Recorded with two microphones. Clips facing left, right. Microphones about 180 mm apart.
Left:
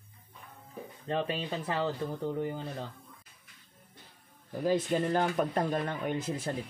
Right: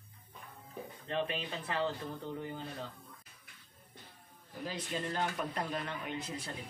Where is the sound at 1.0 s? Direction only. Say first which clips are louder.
Left 4 dB; 35° left (ahead or behind).